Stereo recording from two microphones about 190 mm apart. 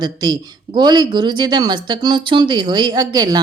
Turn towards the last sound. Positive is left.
turn(degrees=-20)  # may be behind; listen again after turning